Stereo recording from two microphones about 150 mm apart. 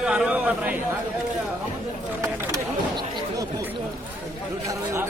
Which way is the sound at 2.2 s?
25° right (ahead or behind).